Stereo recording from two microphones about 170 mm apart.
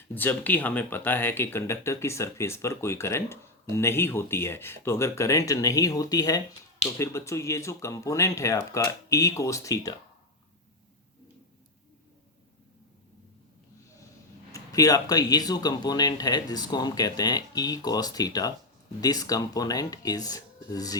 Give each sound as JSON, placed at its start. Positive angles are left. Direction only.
{"t": 0.1, "sound": "speech", "side_deg": 10}
{"t": 14.5, "sound": "speech", "side_deg": 20}